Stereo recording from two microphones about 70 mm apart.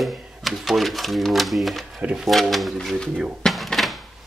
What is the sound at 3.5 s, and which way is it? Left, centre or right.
Door, centre.